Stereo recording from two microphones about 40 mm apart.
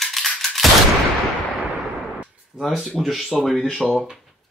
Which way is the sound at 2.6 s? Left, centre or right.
Centre.